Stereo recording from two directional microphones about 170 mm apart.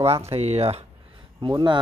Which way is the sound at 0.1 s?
35° right (ahead or behind).